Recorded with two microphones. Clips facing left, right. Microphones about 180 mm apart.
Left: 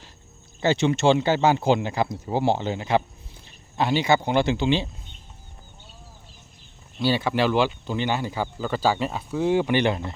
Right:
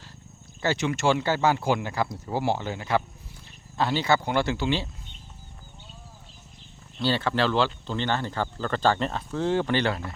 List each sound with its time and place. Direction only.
0.6 s speech: 25° left (ahead or behind)
7.0 s speech: 10° left (ahead or behind)